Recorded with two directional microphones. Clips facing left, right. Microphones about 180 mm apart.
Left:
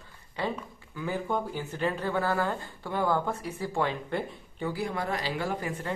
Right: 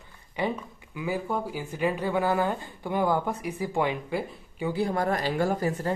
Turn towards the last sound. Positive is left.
turn(degrees=-40)  # may be behind; listen again after turning